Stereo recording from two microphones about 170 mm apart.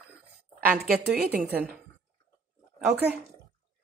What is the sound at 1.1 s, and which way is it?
Speech, 5° right (ahead or behind).